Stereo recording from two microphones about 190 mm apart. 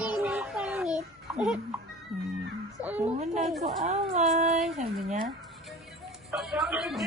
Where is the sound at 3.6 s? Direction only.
35° right (ahead or behind).